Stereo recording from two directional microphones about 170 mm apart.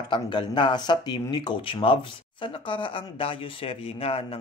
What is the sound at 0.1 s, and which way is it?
Speech, 25° left (ahead or behind).